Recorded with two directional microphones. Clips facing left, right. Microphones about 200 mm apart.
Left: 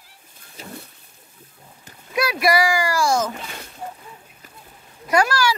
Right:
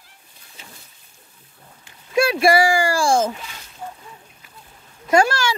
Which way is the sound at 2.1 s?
25° right (ahead or behind).